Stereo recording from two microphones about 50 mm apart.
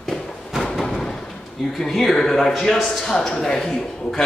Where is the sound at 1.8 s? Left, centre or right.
Centre.